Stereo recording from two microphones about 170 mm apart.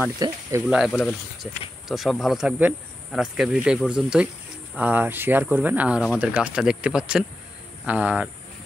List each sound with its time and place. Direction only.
0.2 s speech: 20° right (ahead or behind)
0.7 s speech: 5° right (ahead or behind)
0.9 s speech: 5° left (ahead or behind)